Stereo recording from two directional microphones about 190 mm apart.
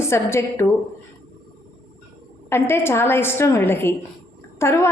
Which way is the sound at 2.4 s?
15° left (ahead or behind).